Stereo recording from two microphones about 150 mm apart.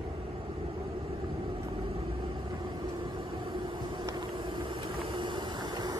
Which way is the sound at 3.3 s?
35° right (ahead or behind).